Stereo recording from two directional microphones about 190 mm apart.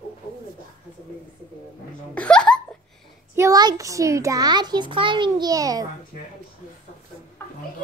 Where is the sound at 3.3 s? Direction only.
20° right (ahead or behind).